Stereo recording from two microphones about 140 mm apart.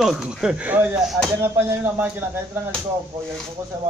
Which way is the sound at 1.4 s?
20° right (ahead or behind).